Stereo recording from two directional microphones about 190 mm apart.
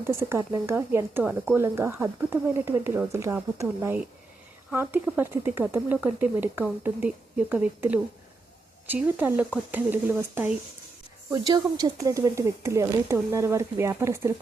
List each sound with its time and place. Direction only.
0.1 s speech: 15° right (ahead or behind)